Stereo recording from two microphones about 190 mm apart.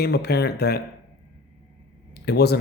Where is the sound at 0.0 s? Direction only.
60° left (ahead or behind).